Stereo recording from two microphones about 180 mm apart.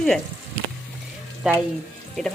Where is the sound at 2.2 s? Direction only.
Centre (ahead or behind).